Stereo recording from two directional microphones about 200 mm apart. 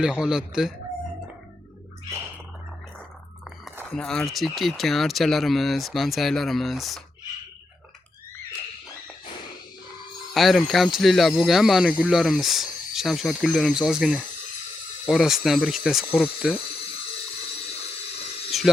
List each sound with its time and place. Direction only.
0.0 s speech: 5° right (ahead or behind)
3.9 s speech: 5° left (ahead or behind)
10.3 s speech: centre (ahead or behind)
18.5 s a sound: centre (ahead or behind)